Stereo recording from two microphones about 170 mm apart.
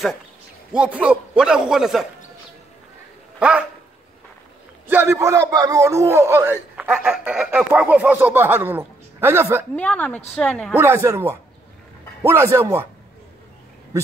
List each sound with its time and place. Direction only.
0.7 s a man's voice: 10° right (ahead or behind)
3.3 s speech: 5° right (ahead or behind)
4.8 s a man's voice: 15° right (ahead or behind)
9.8 s speech: 5° left (ahead or behind)
10.8 s a man's voice: 15° right (ahead or behind)